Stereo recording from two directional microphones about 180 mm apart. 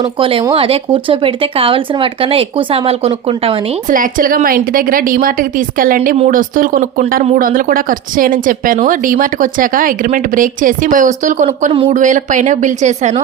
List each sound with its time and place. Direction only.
0.0 s speech: 30° right (ahead or behind)
3.8 s speech: 50° right (ahead or behind)
11.7 s speech: 30° right (ahead or behind)
11.9 s speech: 45° right (ahead or behind)